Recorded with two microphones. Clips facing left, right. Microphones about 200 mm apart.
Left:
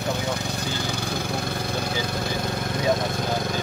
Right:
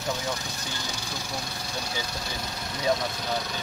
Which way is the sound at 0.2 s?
60° left (ahead or behind).